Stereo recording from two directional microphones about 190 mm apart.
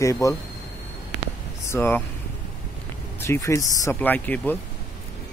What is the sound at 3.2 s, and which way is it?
Speech, 15° left (ahead or behind).